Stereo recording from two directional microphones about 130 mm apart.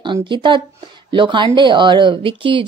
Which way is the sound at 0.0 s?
40° right (ahead or behind).